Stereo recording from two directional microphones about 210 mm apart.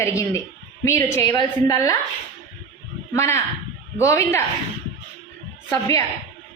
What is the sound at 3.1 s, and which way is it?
A man's voice, 15° left (ahead or behind).